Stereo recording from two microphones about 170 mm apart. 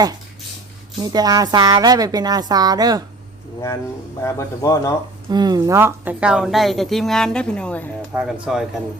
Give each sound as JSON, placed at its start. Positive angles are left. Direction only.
{"t": 1.1, "sound": "a woman's voice", "side_deg": -20}
{"t": 4.2, "sound": "speech", "side_deg": 15}
{"t": 5.3, "sound": "a woman's voice", "side_deg": -25}
{"t": 8.1, "sound": "a woman's voice", "side_deg": -5}